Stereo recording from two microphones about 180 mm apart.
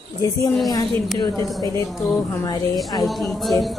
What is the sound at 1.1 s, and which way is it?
Speech, 20° left (ahead or behind).